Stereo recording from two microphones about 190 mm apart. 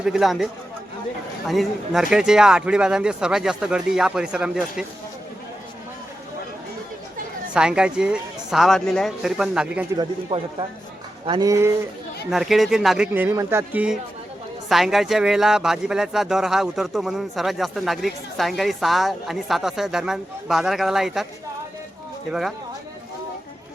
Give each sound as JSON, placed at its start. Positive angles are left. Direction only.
{"t": 0.0, "sound": "speech", "side_deg": 0}
{"t": 7.5, "sound": "speech", "side_deg": -5}
{"t": 10.0, "sound": "speech", "side_deg": -25}
{"t": 12.3, "sound": "speech", "side_deg": 0}
{"t": 22.3, "sound": "speech", "side_deg": 0}